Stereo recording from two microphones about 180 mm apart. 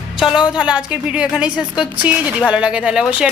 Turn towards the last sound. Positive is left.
turn(degrees=-5)  # may be behind; listen again after turning